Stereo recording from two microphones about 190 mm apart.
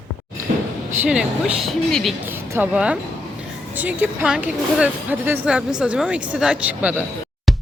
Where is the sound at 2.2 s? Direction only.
10° right (ahead or behind).